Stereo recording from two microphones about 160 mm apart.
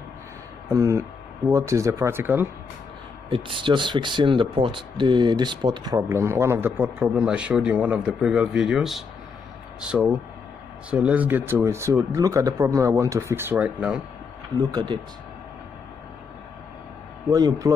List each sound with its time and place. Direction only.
0.7 s speech: 15° right (ahead or behind)
3.3 s speech: 35° right (ahead or behind); by 14.0 s 5° right (ahead or behind)
14.7 s speech: 25° right (ahead or behind)
17.3 s speech: 25° right (ahead or behind)